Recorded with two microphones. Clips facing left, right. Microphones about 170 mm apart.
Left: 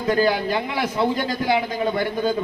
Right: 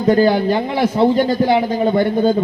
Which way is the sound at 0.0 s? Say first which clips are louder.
Right 7 dB; 35° right (ahead or behind).